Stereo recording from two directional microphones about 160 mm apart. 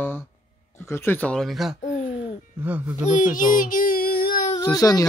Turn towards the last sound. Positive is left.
turn(degrees=25)  # may be behind; listen again after turning